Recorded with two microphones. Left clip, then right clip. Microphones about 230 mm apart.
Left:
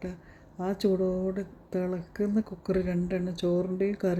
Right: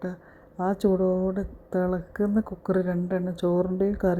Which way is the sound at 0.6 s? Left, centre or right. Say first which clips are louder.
Right 4 dB; centre.